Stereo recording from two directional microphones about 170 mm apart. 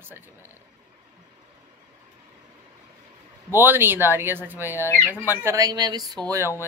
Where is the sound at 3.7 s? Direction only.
10° right (ahead or behind).